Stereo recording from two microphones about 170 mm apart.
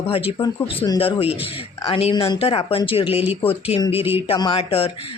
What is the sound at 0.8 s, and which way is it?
Speech, 20° left (ahead or behind).